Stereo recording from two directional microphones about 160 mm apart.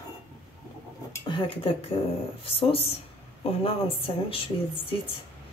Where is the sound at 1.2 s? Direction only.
30° left (ahead or behind).